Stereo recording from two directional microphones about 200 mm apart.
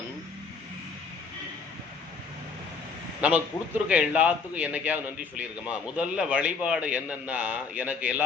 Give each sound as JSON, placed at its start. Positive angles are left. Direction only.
{"t": 3.2, "sound": "a man's voice", "side_deg": -5}